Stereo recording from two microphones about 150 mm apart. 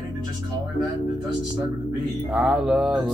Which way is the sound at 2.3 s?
5° right (ahead or behind).